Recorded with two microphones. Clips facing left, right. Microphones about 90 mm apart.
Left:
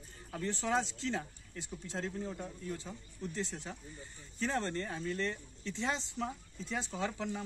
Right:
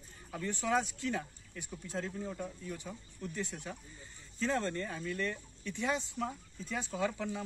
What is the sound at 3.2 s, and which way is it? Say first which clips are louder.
Speech: left 1 dB; 20° left (ahead or behind).